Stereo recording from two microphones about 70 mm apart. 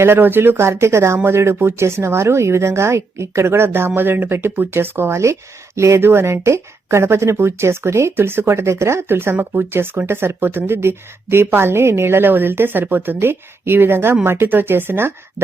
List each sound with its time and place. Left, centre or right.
0.0 s speech: right